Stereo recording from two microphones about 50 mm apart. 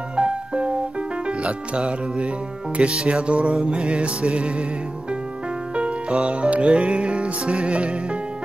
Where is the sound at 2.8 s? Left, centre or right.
Right.